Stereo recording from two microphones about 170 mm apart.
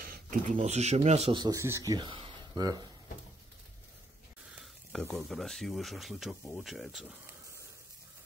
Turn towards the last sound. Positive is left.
turn(degrees=-5)  # may be behind; listen again after turning